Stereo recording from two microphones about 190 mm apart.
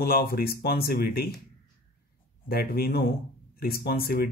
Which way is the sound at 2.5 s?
50° left (ahead or behind).